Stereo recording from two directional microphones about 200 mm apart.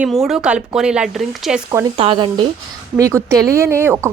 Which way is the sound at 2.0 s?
25° right (ahead or behind).